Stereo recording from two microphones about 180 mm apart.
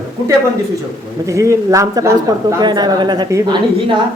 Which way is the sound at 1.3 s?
15° right (ahead or behind).